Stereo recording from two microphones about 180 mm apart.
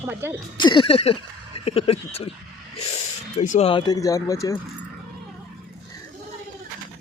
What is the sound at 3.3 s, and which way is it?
Speech, 40° left (ahead or behind).